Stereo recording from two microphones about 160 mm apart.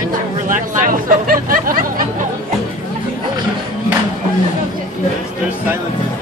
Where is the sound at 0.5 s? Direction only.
55° right (ahead or behind).